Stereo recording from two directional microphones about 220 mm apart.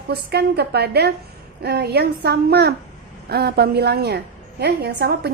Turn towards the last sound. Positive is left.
turn(degrees=-45)  # may be behind; listen again after turning